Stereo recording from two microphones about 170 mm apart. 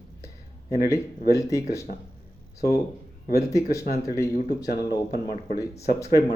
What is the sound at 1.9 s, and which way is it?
Speech, 50° left (ahead or behind).